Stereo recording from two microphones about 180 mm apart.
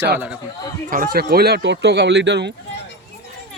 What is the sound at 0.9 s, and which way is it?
Speech, 55° right (ahead or behind).